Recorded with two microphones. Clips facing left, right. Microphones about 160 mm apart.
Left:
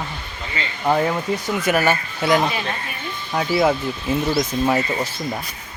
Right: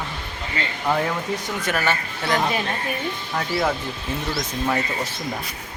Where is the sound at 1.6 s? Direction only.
10° left (ahead or behind).